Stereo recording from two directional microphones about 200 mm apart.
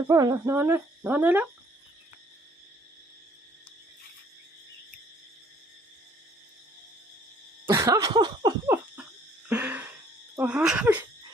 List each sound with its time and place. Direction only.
0.1 s speech: 15° right (ahead or behind)
7.7 s a sound: 15° right (ahead or behind)
10.3 s speech: 5° right (ahead or behind)